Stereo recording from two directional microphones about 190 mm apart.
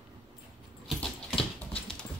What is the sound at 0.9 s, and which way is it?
Clip-clop, centre (ahead or behind).